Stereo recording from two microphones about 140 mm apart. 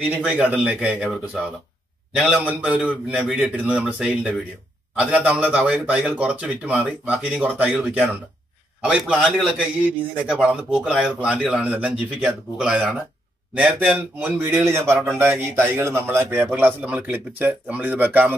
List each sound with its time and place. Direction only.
0.1 s a man's voice: 5° right (ahead or behind)
2.2 s a man's voice: 10° right (ahead or behind)